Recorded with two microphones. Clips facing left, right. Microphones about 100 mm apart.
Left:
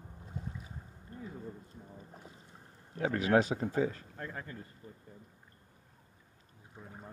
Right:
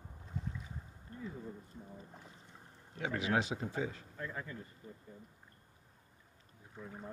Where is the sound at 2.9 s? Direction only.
45° left (ahead or behind).